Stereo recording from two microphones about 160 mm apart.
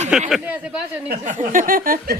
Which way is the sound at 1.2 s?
50° right (ahead or behind).